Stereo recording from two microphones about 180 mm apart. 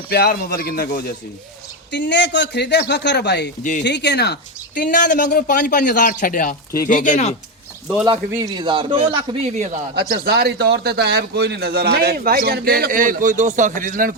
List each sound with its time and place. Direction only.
0.1 s speech: 60° left (ahead or behind)
1.9 s speech: 75° left (ahead or behind)
3.6 s speech: 45° left (ahead or behind)
3.8 s speech: 70° left (ahead or behind); by 7.3 s 45° left (ahead or behind)
8.0 s a man's voice: 25° right (ahead or behind); by 9.8 s 40° right (ahead or behind)
9.9 s a man's voice: 60° right (ahead or behind)